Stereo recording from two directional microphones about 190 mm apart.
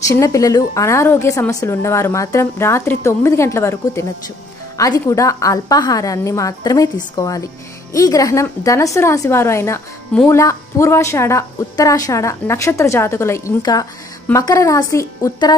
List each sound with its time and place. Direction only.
0.1 s a woman's voice: 15° left (ahead or behind)